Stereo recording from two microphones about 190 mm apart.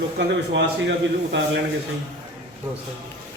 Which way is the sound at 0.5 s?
65° right (ahead or behind).